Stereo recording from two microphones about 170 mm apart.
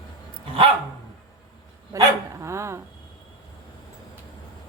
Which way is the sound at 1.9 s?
20° right (ahead or behind).